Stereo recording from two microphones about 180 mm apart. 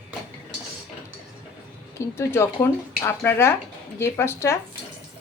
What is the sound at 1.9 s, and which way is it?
Speech, 15° left (ahead or behind).